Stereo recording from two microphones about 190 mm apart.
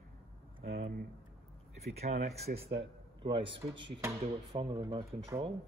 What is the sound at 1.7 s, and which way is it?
Speech, 35° right (ahead or behind).